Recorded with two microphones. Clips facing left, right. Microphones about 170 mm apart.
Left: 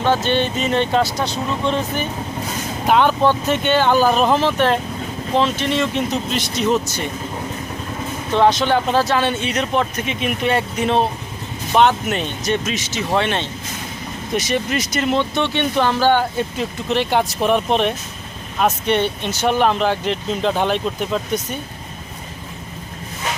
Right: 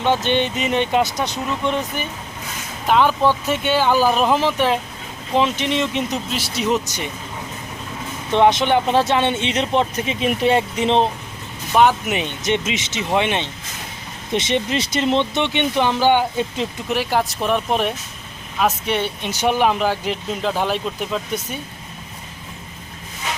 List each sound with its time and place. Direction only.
0.0 s speech: 20° right (ahead or behind)
2.8 s speech: centre (ahead or behind); by 7.1 s 15° right (ahead or behind)
8.4 s speech: 25° right (ahead or behind)
11.8 s speech: 10° right (ahead or behind)
17.0 s speech: centre (ahead or behind)